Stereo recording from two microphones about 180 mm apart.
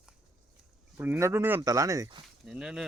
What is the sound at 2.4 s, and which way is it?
Speech, 5° right (ahead or behind).